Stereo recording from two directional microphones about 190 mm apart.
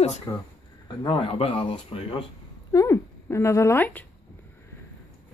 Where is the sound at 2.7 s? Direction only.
15° left (ahead or behind).